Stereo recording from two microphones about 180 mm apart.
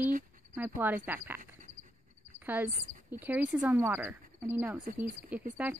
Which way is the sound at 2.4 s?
10° right (ahead or behind).